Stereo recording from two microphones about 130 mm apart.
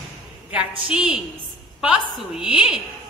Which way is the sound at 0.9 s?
10° right (ahead or behind).